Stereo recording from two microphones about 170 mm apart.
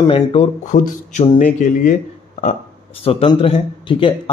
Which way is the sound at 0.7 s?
50° left (ahead or behind).